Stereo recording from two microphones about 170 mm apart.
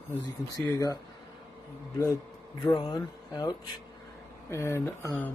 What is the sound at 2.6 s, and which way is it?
Speech, 25° left (ahead or behind).